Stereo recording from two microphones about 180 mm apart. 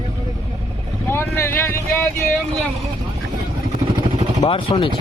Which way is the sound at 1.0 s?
15° left (ahead or behind).